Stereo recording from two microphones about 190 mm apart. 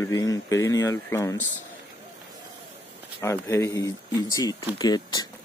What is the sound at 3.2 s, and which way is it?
Speech, 15° left (ahead or behind).